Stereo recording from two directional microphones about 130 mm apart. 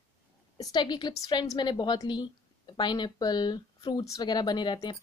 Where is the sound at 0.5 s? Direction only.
35° left (ahead or behind).